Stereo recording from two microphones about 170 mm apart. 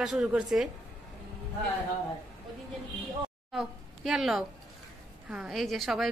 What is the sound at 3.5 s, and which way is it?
A woman's voice, centre (ahead or behind).